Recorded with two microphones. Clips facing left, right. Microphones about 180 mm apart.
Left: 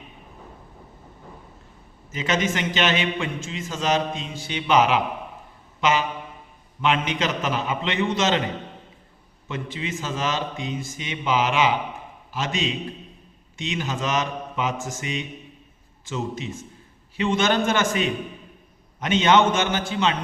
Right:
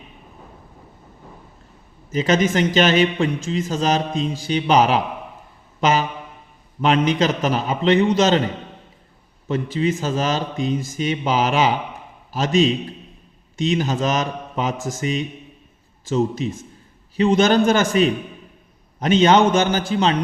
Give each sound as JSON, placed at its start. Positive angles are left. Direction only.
{"t": 2.1, "sound": "a man's voice", "side_deg": -40}
{"t": 9.5, "sound": "a man's voice", "side_deg": -40}